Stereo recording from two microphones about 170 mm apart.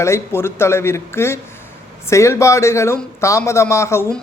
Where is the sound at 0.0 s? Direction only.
15° left (ahead or behind).